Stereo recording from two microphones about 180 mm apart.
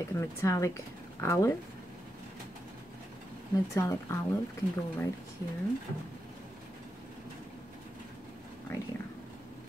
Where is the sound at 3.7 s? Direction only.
15° left (ahead or behind).